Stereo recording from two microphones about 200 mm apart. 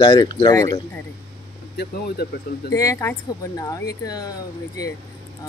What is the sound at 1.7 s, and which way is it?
Speech, 50° left (ahead or behind).